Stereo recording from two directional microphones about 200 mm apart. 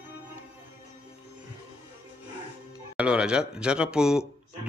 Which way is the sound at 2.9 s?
5° right (ahead or behind).